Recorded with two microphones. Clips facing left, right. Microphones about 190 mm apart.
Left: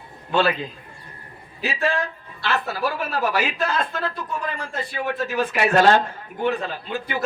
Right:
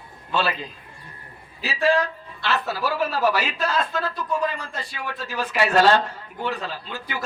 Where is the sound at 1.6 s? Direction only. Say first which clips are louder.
Right 3 dB; 50° left (ahead or behind).